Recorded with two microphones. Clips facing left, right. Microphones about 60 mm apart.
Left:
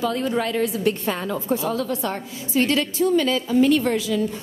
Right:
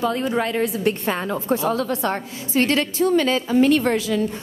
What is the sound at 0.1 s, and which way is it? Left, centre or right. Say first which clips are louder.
A woman's voice: right 1 dB; right.